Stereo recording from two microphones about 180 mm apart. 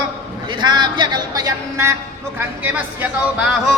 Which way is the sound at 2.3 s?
10° right (ahead or behind).